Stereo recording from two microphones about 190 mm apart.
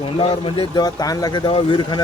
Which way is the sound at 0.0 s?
30° left (ahead or behind).